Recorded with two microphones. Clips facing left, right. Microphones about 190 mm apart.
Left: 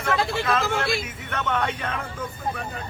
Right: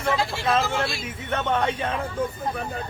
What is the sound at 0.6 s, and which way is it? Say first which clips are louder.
Speech: even; 55° left (ahead or behind).